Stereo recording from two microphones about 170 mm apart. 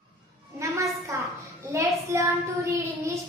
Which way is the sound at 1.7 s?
20° right (ahead or behind).